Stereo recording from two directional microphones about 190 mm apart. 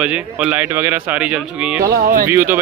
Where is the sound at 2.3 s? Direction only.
10° right (ahead or behind).